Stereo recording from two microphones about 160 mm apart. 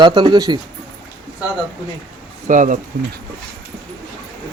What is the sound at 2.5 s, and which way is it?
Speech, 55° right (ahead or behind).